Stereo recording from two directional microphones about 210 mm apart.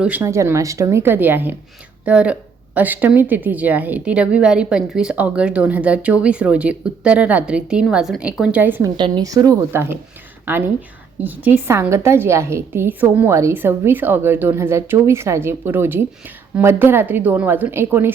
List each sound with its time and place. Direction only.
0.0 s a woman's voice: 10° right (ahead or behind)
9.0 s a woman's voice: 20° right (ahead or behind)